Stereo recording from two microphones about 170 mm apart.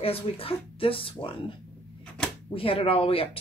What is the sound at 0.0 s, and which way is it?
Speech, 35° left (ahead or behind).